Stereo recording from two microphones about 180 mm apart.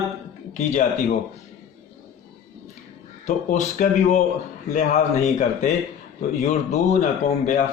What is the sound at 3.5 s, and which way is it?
A man's voice, 45° left (ahead or behind).